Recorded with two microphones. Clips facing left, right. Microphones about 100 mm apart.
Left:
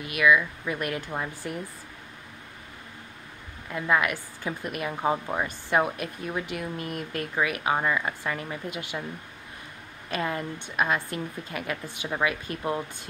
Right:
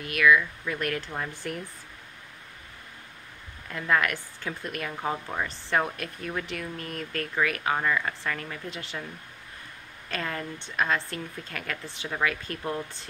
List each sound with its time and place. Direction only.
0.1 s a woman's voice: 10° left (ahead or behind)
3.6 s a woman's voice: 15° left (ahead or behind)
10.0 s a woman's voice: 20° left (ahead or behind)